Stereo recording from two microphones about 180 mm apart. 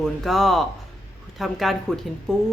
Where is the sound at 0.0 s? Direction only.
Centre (ahead or behind).